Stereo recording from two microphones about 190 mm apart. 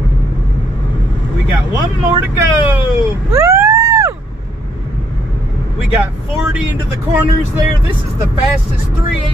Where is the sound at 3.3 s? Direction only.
15° right (ahead or behind).